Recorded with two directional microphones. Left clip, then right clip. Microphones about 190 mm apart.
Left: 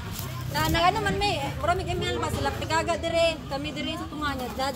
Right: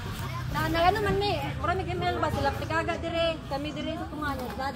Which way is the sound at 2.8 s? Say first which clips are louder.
Left 4 dB; 50° left (ahead or behind).